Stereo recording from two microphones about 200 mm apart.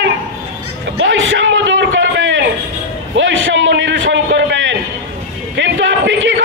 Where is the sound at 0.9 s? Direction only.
70° right (ahead or behind).